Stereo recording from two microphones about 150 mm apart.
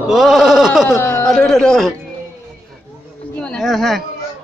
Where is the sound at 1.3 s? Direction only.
Centre (ahead or behind).